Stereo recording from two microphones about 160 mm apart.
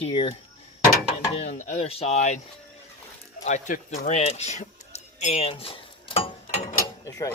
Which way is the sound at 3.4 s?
50° left (ahead or behind).